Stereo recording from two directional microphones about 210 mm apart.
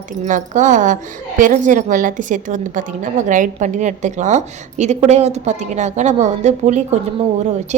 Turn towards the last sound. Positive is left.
turn(degrees=-35)  # may be behind; listen again after turning